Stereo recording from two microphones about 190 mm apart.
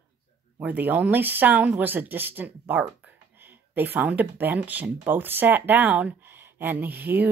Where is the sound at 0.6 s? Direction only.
10° right (ahead or behind).